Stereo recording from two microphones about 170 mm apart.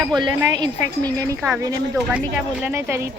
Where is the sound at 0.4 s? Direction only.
20° right (ahead or behind).